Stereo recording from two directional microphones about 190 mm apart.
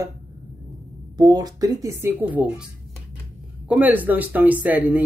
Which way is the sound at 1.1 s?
20° right (ahead or behind).